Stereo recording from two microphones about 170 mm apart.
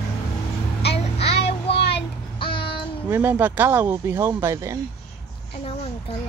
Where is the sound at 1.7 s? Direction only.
80° left.